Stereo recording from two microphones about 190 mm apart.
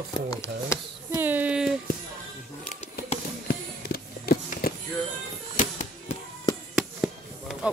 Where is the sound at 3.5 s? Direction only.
55° left (ahead or behind).